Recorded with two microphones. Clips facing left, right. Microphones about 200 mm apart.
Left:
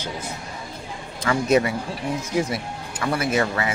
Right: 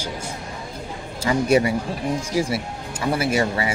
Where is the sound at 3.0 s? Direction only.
25° right (ahead or behind).